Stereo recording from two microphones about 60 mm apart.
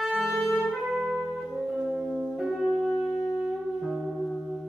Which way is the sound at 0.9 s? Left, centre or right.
Centre.